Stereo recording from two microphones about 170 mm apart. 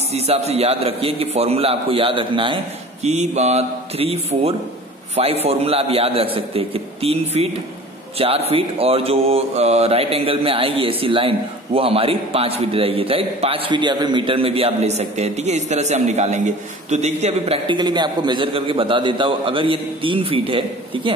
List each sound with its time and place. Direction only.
0.1 s speech: 40° right (ahead or behind)